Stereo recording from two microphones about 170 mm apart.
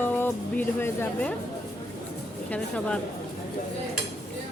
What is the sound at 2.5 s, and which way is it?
Speech, 5° left (ahead or behind).